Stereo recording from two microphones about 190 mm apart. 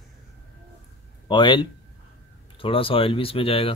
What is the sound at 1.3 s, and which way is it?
Speech, 25° left (ahead or behind).